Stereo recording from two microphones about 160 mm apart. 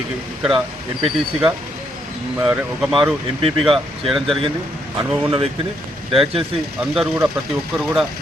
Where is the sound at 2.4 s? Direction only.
10° right (ahead or behind).